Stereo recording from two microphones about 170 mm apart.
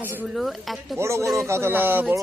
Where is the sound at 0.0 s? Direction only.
10° right (ahead or behind).